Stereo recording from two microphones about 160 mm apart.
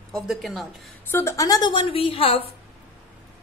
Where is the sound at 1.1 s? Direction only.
20° left (ahead or behind); by 2.4 s 35° left (ahead or behind).